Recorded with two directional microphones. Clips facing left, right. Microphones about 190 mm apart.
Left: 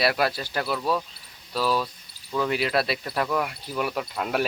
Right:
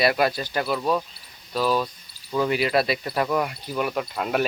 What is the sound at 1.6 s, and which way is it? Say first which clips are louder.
Cricket: right 2 dB; 20° right (ahead or behind).